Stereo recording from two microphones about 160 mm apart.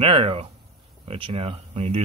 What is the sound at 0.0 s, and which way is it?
Speech, 35° right (ahead or behind).